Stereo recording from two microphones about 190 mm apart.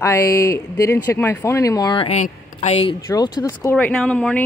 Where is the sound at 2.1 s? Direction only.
35° left (ahead or behind).